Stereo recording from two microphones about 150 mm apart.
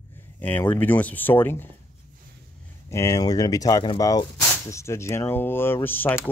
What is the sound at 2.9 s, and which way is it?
Speech, 20° left (ahead or behind).